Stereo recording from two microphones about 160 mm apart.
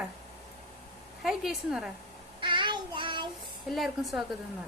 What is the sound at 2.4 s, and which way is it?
Child singing, 30° right (ahead or behind).